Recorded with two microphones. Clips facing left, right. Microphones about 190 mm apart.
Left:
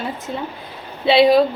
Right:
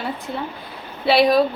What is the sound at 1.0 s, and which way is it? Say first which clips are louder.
Speech: left 3 dB; 25° left (ahead or behind).